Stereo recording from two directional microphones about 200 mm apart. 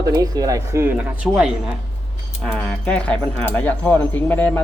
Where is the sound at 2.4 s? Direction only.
5° left (ahead or behind).